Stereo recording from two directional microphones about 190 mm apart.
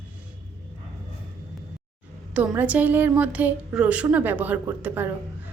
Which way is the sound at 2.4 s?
5° right (ahead or behind).